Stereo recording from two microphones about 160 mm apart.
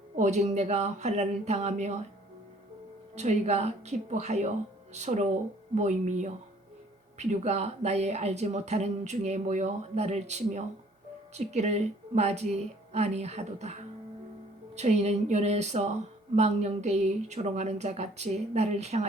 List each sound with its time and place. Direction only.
0.2 s speech: 45° right (ahead or behind)
3.2 s speech: 45° right (ahead or behind)